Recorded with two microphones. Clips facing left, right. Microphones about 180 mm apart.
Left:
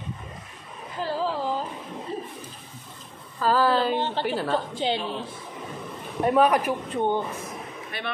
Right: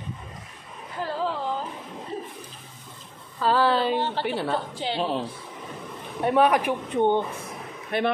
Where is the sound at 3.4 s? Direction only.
Centre (ahead or behind).